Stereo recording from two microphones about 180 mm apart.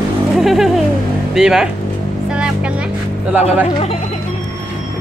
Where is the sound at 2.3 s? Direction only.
5° right (ahead or behind).